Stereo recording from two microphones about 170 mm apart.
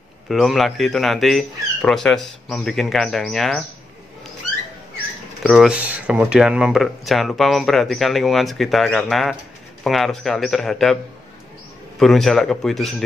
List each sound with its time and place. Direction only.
0.3 s speech: centre (ahead or behind)
5.4 s speech: centre (ahead or behind)
12.0 s speech: centre (ahead or behind)